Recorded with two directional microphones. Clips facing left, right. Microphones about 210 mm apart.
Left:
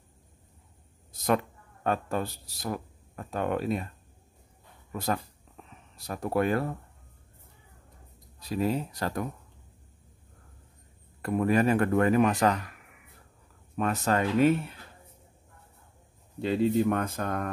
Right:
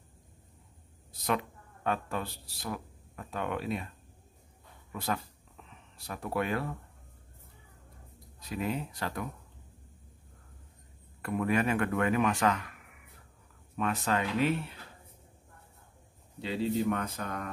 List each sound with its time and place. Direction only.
1.1 s speech: 45° left (ahead or behind)
4.9 s speech: 40° left (ahead or behind)
5.6 s a sound: 45° left (ahead or behind)
5.9 s speech: 40° left (ahead or behind)
8.4 s speech: 35° left (ahead or behind)
11.2 s speech: 40° left (ahead or behind)
13.7 s speech: 40° left (ahead or behind)
16.3 s speech: 50° left (ahead or behind)